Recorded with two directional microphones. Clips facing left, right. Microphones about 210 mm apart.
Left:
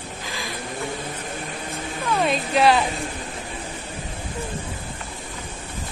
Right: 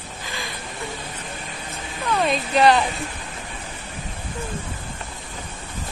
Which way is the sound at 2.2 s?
Centre (ahead or behind).